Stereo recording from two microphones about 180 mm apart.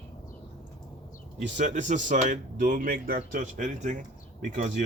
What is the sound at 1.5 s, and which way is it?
Speech, 45° right (ahead or behind).